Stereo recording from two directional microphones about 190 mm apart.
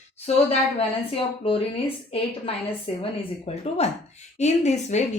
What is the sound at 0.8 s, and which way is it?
Speech, 30° left (ahead or behind).